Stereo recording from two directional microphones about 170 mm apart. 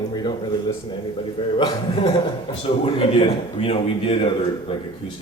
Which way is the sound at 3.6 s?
35° left (ahead or behind).